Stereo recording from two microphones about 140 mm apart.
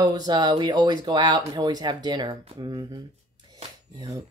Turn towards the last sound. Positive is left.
turn(degrees=-25)  # may be behind; listen again after turning